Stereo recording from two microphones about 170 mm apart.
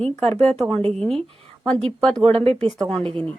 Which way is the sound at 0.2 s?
35° right (ahead or behind).